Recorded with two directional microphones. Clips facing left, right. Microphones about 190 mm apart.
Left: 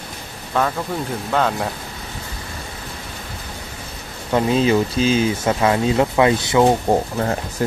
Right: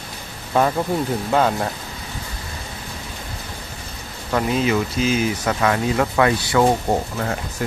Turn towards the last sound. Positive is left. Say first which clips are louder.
# left 4 dB
turn(degrees=35)  # may be behind; listen again after turning